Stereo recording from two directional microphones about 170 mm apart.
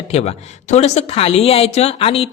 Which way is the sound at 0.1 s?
40° left (ahead or behind).